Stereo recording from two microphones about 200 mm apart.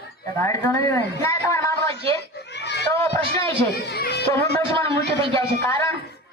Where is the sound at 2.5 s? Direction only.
60° left (ahead or behind).